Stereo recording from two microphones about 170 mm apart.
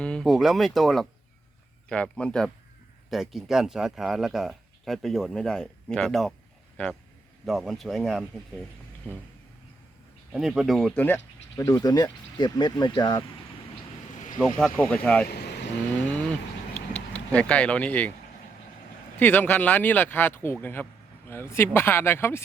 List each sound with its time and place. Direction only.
0.0 s speech: 5° left (ahead or behind)
10.3 s speech: 5° right (ahead or behind); by 13.2 s 20° left (ahead or behind)
14.4 s speech: 5° left (ahead or behind)
15.3 s vehicle: 75° left (ahead or behind)
16.7 s a sound: 40° left (ahead or behind)
17.2 s speech: 5° left (ahead or behind)
19.2 s speech: 10° left (ahead or behind)